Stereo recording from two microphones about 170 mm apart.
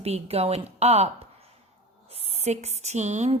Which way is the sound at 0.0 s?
35° right (ahead or behind).